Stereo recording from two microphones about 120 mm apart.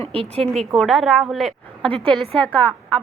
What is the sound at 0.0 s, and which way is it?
Speech, 55° right (ahead or behind).